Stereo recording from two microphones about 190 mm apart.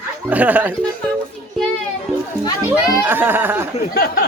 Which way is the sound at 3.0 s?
10° right (ahead or behind).